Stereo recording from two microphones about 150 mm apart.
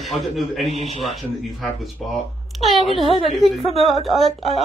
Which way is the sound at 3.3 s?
Centre (ahead or behind).